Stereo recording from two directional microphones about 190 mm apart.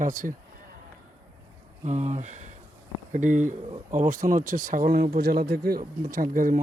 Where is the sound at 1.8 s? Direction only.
40° right (ahead or behind).